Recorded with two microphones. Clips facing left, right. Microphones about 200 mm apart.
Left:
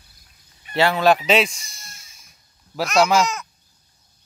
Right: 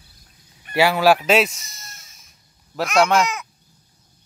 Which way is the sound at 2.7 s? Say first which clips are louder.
Even; centre (ahead or behind).